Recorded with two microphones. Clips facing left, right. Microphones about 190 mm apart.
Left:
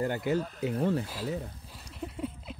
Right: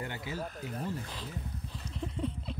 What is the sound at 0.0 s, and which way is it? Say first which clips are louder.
Speech: left 9 dB; 45° left (ahead or behind).